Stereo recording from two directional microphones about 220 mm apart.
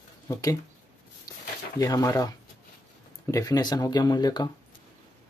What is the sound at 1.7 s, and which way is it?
Speech, 15° left (ahead or behind).